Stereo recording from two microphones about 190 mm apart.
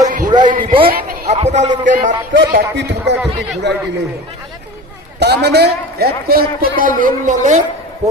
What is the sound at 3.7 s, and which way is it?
Speech, 65° right (ahead or behind).